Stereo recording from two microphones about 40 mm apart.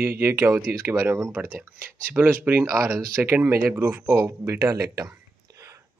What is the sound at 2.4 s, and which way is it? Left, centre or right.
Speech, right.